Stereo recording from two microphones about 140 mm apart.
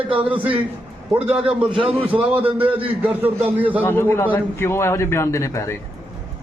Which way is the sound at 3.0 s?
10° right (ahead or behind).